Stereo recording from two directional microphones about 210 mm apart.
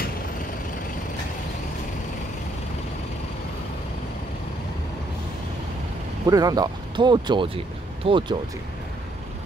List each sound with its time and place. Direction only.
6.2 s speech: 20° right (ahead or behind)